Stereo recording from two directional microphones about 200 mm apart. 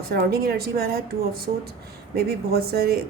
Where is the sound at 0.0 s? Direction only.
50° right (ahead or behind).